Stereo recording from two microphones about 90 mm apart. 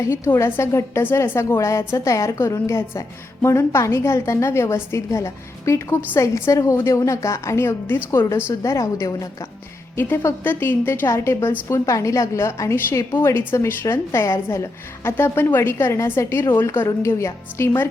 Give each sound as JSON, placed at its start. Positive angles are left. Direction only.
{"t": 0.0, "sound": "a woman's voice", "side_deg": 30}
{"t": 9.9, "sound": "a woman's voice", "side_deg": 25}